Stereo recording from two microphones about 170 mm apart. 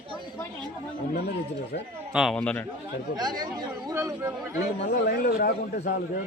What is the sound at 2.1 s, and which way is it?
Speech, centre (ahead or behind).